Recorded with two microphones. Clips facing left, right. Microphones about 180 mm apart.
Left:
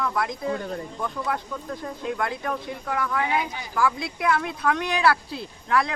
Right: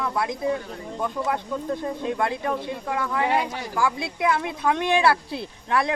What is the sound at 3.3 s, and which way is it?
Speech, 65° right (ahead or behind).